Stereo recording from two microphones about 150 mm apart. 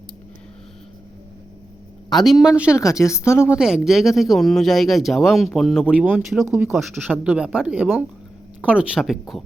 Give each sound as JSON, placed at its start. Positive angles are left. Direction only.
{"t": 2.1, "sound": "speech", "side_deg": 0}
{"t": 2.7, "sound": "a woman's voice", "side_deg": 20}
{"t": 3.5, "sound": "speech", "side_deg": -5}